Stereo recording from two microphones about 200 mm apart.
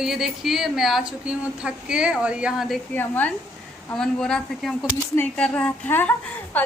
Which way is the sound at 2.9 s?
10° left (ahead or behind).